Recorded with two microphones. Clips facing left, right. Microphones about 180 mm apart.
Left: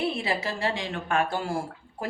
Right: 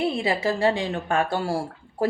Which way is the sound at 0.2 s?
30° right (ahead or behind).